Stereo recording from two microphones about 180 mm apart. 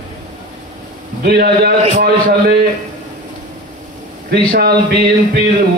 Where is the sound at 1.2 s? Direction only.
60° right (ahead or behind).